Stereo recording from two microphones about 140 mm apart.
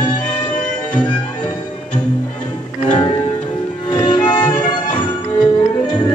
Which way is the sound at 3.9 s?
35° left (ahead or behind).